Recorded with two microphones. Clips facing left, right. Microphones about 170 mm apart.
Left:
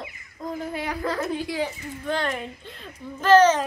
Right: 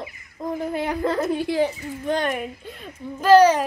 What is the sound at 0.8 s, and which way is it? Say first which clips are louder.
Speech: right 5 dB; 25° right (ahead or behind).